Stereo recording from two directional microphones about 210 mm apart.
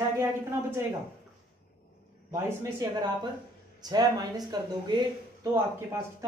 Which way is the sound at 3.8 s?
20° right (ahead or behind).